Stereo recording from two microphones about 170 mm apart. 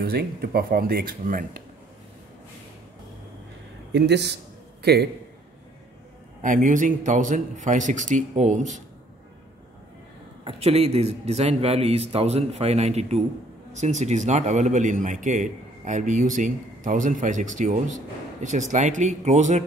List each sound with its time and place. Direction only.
0.0 s speech: 70° right (ahead or behind)
3.9 s speech: 85° right
6.4 s a man's voice: 50° right (ahead or behind)
10.4 s a man's voice: 35° right (ahead or behind)